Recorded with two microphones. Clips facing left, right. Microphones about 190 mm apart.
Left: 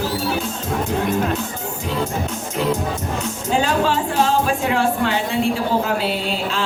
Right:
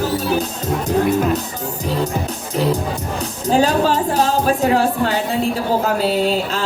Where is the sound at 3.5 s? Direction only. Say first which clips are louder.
Right 4 dB; 40° right (ahead or behind).